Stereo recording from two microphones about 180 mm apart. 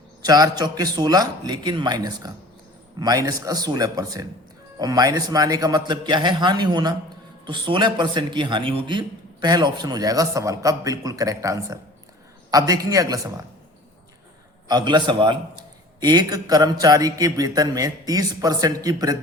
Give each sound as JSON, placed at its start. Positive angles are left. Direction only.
{"t": 0.2, "sound": "a man's voice", "side_deg": -20}
{"t": 14.7, "sound": "a man's voice", "side_deg": -25}